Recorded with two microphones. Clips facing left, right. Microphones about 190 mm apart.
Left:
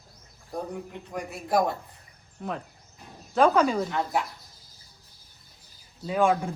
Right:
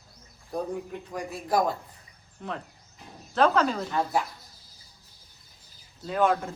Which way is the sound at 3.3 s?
10° left (ahead or behind).